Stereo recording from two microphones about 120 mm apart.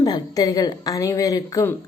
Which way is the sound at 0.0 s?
30° left (ahead or behind).